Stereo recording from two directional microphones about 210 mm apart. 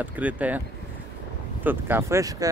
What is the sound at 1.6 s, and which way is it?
Speech, 10° right (ahead or behind).